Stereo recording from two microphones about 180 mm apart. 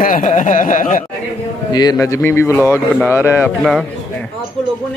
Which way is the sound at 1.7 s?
20° left (ahead or behind).